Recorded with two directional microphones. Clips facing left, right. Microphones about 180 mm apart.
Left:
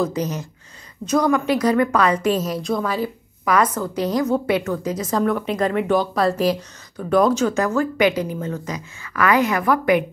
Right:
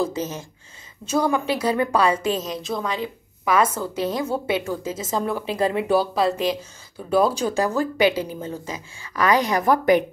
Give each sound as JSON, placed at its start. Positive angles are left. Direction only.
{"t": 0.0, "sound": "a woman's voice", "side_deg": -25}
{"t": 2.5, "sound": "a woman's voice", "side_deg": 0}
{"t": 3.4, "sound": "a woman's voice", "side_deg": -25}
{"t": 7.1, "sound": "speech", "side_deg": -10}
{"t": 7.5, "sound": "a woman's voice", "side_deg": -35}